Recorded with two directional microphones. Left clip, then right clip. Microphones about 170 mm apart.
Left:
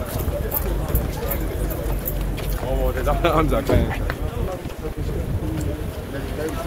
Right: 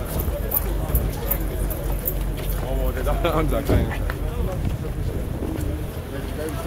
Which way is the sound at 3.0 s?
70° left (ahead or behind).